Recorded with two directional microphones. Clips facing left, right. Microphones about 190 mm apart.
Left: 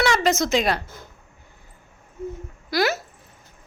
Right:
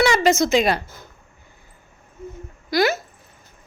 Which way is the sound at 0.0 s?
Centre (ahead or behind).